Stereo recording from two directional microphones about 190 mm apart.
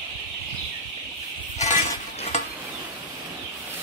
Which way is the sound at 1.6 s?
40° left (ahead or behind).